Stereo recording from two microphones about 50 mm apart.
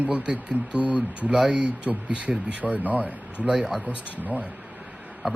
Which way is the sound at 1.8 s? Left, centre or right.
Right.